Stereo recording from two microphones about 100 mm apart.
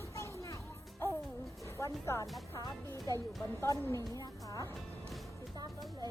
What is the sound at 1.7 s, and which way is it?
Music, 30° left (ahead or behind).